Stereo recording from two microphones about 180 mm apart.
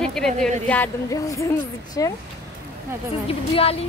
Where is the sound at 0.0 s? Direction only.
5° left (ahead or behind); by 2.1 s 20° left (ahead or behind).